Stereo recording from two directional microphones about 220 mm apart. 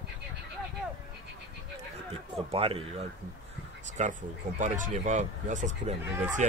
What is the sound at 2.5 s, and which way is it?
Speech, 25° right (ahead or behind).